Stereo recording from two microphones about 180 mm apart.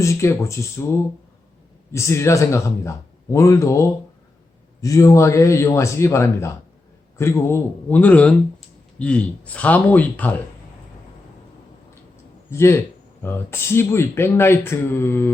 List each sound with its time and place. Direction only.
0.0 s speech: 15° left (ahead or behind)
12.5 s speech: 15° left (ahead or behind)